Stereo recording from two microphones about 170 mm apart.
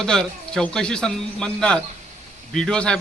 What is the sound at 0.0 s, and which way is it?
Speech, 5° left (ahead or behind).